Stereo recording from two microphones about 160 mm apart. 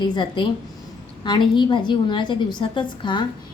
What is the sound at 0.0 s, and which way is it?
A woman's voice, 25° left (ahead or behind).